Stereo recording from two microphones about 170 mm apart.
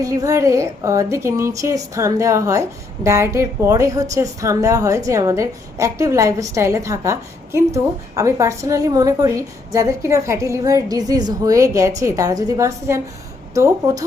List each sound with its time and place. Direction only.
0.0 s a woman's voice: 20° right (ahead or behind)